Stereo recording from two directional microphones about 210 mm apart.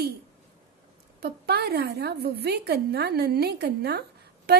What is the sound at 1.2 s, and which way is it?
A woman's voice, 50° right (ahead or behind).